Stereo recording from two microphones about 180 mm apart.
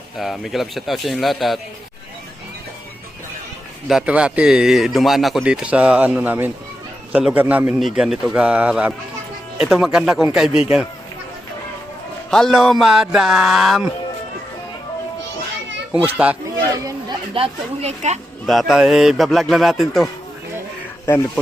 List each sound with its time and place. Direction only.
0.2 s a man's voice: centre (ahead or behind)
3.8 s a man's voice: 5° right (ahead or behind)
12.3 s a man's voice: centre (ahead or behind)
15.9 s a man's voice: 10° right (ahead or behind)
16.8 s speech: 25° right (ahead or behind)
18.4 s a man's voice: centre (ahead or behind)